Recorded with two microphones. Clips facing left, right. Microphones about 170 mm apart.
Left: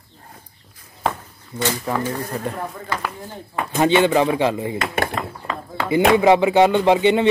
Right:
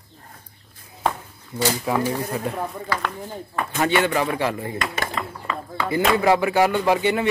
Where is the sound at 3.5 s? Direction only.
25° left (ahead or behind).